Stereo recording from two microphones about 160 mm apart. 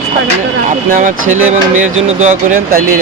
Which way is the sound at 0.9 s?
55° right (ahead or behind).